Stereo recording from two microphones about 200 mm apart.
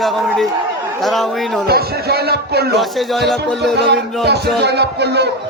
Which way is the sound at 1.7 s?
50° right (ahead or behind).